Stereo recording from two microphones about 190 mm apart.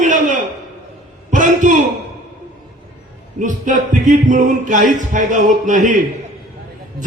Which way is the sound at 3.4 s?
40° right (ahead or behind).